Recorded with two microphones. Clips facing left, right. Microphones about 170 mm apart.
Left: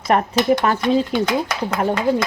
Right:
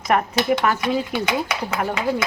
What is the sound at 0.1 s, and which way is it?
Speech, 30° left (ahead or behind).